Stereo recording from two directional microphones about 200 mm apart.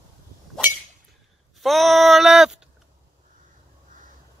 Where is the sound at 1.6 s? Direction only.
Centre (ahead or behind).